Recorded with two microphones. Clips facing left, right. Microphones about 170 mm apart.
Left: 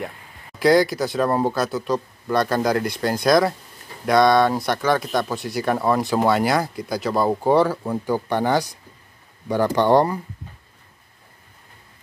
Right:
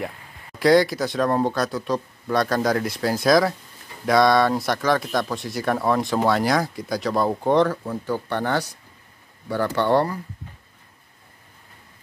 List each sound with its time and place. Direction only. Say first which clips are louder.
0.6 s speech: even; centre (ahead or behind); by 10.1 s 15° left (ahead or behind)